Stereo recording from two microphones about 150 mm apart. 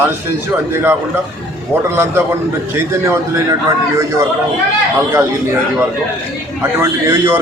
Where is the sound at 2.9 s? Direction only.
20° right (ahead or behind).